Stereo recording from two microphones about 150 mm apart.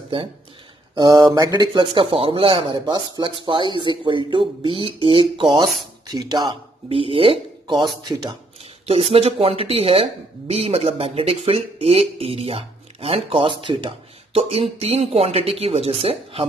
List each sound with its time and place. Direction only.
0.9 s speech: 25° right (ahead or behind)
8.8 s speech: 40° right (ahead or behind)